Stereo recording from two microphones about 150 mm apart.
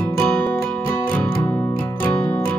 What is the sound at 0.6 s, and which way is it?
Music, 15° left (ahead or behind).